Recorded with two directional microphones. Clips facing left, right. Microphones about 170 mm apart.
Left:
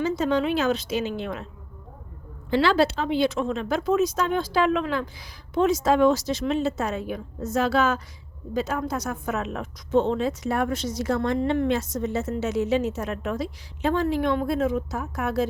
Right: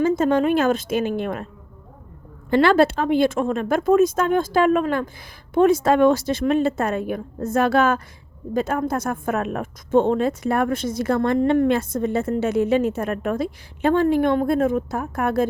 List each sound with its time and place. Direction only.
0.0 s a woman's voice: 50° right (ahead or behind)
2.5 s a woman's voice: 50° right (ahead or behind)